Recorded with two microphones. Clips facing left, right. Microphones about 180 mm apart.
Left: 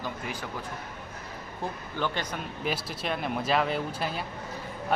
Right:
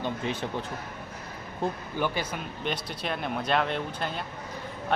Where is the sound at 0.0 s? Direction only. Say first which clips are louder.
Right 5 dB; 25° right (ahead or behind).